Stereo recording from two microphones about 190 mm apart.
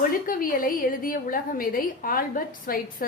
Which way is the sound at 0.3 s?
50° left (ahead or behind).